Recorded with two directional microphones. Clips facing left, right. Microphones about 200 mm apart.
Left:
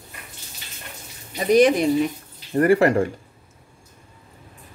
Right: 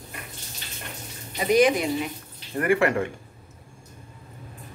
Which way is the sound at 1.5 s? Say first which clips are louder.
Left 5 dB; 40° left (ahead or behind).